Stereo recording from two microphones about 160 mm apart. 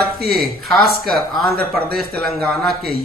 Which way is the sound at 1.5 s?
70° right (ahead or behind).